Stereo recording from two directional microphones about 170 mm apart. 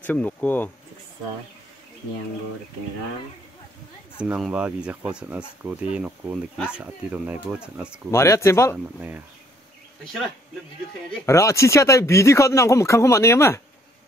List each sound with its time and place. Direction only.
0.0 s speech: 10° left (ahead or behind)
4.2 s speech: 5° right (ahead or behind)
8.1 s speech: 15° left (ahead or behind)
11.2 s speech: 15° left (ahead or behind)